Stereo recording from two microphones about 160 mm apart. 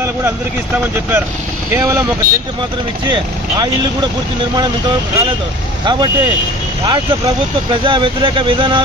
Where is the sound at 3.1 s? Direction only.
30° right (ahead or behind).